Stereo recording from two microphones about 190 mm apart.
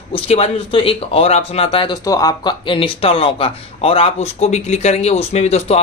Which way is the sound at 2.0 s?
20° left (ahead or behind).